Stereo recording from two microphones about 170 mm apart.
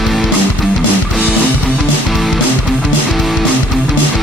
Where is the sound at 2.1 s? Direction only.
Centre (ahead or behind).